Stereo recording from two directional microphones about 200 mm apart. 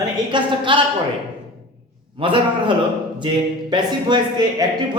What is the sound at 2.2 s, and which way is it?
Speech, 25° right (ahead or behind).